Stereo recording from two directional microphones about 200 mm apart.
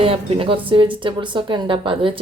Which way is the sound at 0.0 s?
30° right (ahead or behind).